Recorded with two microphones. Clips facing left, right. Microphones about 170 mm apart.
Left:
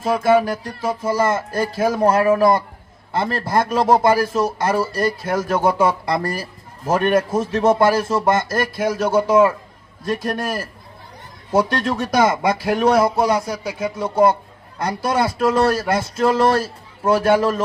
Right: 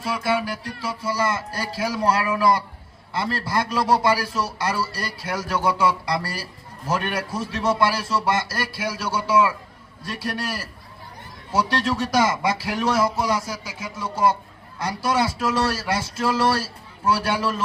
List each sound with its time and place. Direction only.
0.0 s a man's voice: 50° left (ahead or behind)